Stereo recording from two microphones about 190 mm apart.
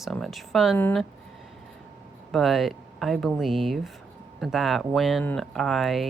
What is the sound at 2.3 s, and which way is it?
Speech, centre (ahead or behind).